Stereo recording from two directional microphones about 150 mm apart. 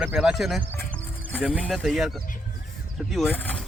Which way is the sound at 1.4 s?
10° right (ahead or behind).